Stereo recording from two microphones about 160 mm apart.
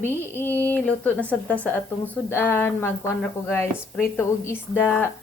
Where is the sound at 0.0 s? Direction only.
15° left (ahead or behind).